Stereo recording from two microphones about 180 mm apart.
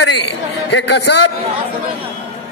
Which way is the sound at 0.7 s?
70° left (ahead or behind).